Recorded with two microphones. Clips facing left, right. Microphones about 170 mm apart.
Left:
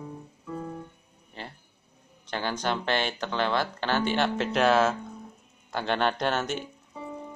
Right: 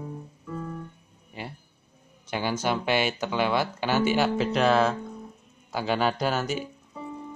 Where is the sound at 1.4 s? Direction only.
10° right (ahead or behind).